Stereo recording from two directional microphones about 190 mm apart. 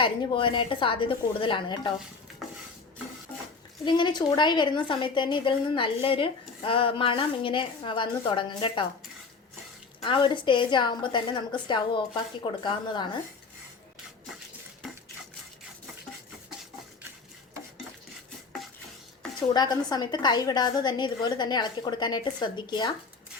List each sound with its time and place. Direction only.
0.0 s a woman's voice: 25° left (ahead or behind)
3.3 s dishes: 10° left (ahead or behind)
3.8 s a woman's voice: 25° left (ahead or behind)
10.0 s a woman's voice: 25° left (ahead or behind)
19.4 s a woman's voice: 20° left (ahead or behind)